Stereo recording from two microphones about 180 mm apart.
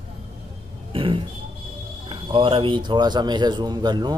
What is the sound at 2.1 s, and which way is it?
Speech, 30° right (ahead or behind).